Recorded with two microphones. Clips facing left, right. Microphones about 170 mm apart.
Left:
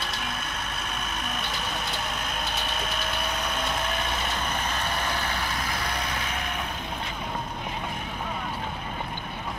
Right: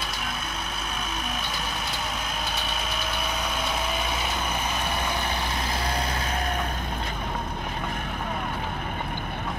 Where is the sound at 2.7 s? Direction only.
Centre (ahead or behind); by 6.5 s 35° right (ahead or behind).